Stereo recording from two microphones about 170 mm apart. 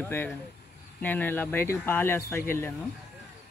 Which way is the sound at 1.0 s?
10° left (ahead or behind).